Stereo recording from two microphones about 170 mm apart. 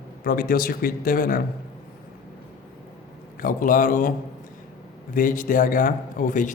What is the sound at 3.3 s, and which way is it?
Speech, 55° left (ahead or behind).